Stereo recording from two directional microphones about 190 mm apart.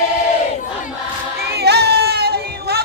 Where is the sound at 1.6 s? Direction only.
60° right (ahead or behind).